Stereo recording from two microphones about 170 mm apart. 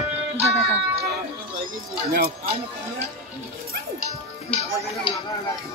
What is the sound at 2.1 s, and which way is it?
Speech, 60° right (ahead or behind).